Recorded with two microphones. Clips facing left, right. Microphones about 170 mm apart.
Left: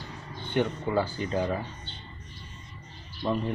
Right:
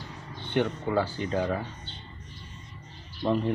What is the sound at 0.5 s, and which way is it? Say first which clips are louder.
Speech: even; 15° right (ahead or behind).